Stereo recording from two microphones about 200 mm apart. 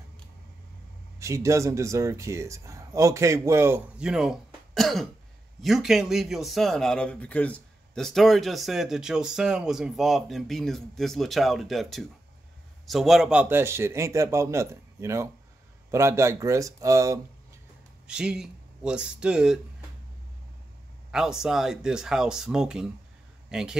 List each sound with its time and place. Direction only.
1.2 s a man's voice: 15° right (ahead or behind)
18.0 s speech: 5° right (ahead or behind)
21.1 s a man's voice: 5° right (ahead or behind)